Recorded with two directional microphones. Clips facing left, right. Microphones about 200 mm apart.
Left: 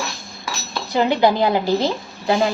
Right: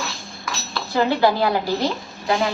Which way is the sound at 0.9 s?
20° left (ahead or behind).